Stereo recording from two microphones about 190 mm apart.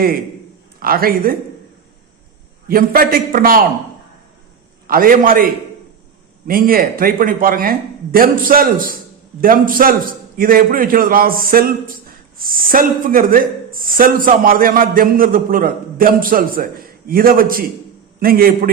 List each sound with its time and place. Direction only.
0.8 s a man's voice: 50° right (ahead or behind)
2.6 s a man's voice: 50° right (ahead or behind)
4.9 s a man's voice: 50° right (ahead or behind)
6.5 s a man's voice: 50° right (ahead or behind)